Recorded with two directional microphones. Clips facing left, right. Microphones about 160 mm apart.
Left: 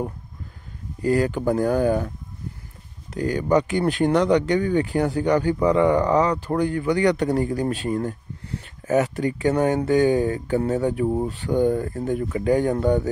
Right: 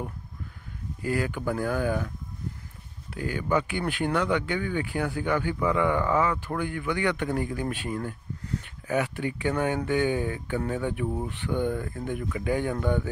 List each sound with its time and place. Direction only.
1.0 s speech: 40° left (ahead or behind)
3.2 s speech: 40° left (ahead or behind)